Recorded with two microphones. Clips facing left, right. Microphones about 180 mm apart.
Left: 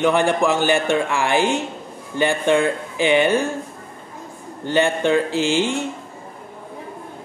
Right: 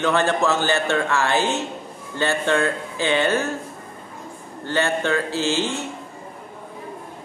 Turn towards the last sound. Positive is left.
turn(degrees=15)  # may be behind; listen again after turning